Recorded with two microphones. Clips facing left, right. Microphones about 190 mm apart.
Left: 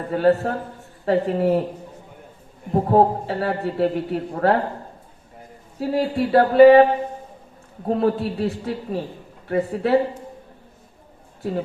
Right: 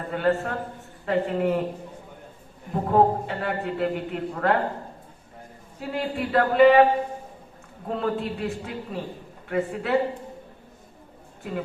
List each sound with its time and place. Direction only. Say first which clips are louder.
0.1 s a man's voice: left 6 dB; 35° left (ahead or behind)
2.7 s a man's voice: left 3 dB; 35° left (ahead or behind)
5.8 s a man's voice: left 7 dB; 35° left (ahead or behind)
7.9 s a man's voice: left 6 dB; 35° left (ahead or behind)